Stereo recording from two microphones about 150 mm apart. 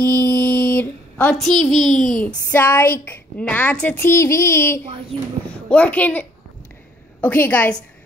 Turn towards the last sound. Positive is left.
turn(degrees=10)  # may be behind; listen again after turning